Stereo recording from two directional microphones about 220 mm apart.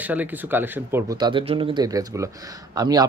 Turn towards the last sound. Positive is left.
turn(degrees=-20)  # may be behind; listen again after turning